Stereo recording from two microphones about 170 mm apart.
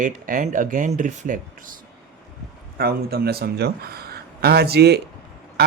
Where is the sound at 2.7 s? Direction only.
65° right (ahead or behind).